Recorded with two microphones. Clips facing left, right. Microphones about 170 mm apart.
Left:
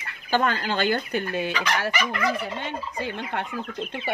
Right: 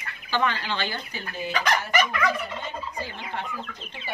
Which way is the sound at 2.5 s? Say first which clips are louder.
Left 2 dB; 65° left (ahead or behind).